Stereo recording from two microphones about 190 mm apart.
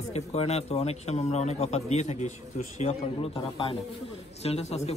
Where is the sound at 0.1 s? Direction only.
35° left (ahead or behind).